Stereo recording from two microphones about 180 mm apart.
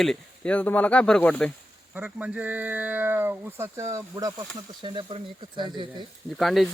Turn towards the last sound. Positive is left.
turn(degrees=0)  # may be behind; listen again after turning